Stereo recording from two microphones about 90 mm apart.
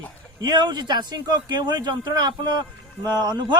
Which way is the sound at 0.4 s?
55° right (ahead or behind).